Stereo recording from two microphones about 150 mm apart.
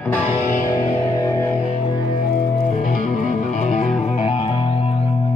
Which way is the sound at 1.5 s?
45° left (ahead or behind).